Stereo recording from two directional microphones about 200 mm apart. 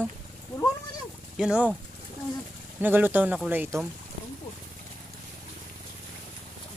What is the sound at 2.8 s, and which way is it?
Speech, 10° right (ahead or behind).